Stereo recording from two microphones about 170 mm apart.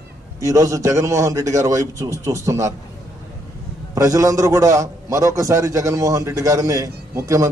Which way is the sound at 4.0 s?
20° right (ahead or behind).